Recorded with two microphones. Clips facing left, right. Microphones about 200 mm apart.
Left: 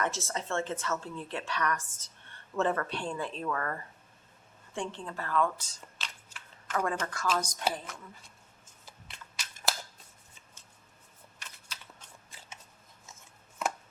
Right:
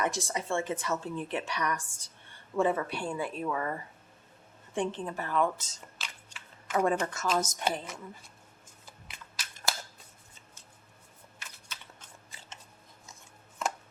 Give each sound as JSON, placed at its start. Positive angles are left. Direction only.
{"t": 0.0, "sound": "a woman's voice", "side_deg": -15}
{"t": 6.0, "sound": "a sound", "side_deg": -5}
{"t": 6.7, "sound": "a woman's voice", "side_deg": -25}
{"t": 11.3, "sound": "typing", "side_deg": -5}